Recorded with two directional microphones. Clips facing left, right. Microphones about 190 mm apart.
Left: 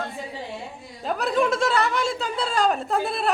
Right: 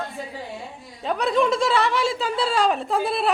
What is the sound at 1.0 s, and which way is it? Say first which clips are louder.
Speech: right 2 dB; centre (ahead or behind).